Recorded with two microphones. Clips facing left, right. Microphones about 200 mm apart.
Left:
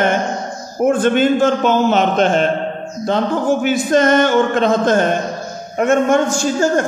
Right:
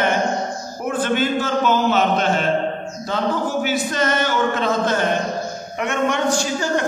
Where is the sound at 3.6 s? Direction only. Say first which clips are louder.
Left 7 dB; 50° left (ahead or behind).